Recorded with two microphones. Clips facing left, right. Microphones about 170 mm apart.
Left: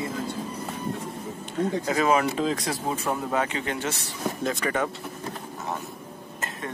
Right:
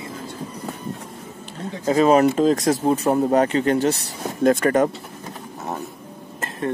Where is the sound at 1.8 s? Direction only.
35° right (ahead or behind).